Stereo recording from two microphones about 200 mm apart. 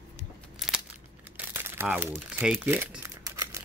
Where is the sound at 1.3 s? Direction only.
10° right (ahead or behind).